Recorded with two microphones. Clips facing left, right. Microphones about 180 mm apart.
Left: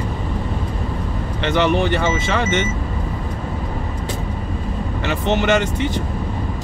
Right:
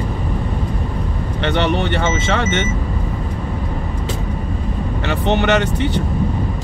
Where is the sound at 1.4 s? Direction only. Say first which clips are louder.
Even; 60° right (ahead or behind).